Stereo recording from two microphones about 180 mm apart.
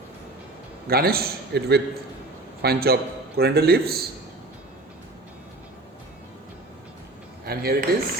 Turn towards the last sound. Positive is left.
turn(degrees=-60)  # may be behind; listen again after turning